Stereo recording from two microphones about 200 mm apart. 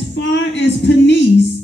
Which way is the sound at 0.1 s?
65° left (ahead or behind).